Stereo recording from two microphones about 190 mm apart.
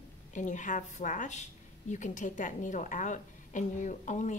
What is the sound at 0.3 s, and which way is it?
Speech, 40° left (ahead or behind).